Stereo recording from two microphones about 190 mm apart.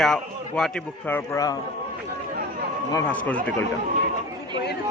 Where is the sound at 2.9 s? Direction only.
10° left (ahead or behind).